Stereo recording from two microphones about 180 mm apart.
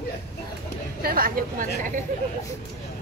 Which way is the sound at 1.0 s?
55° right (ahead or behind).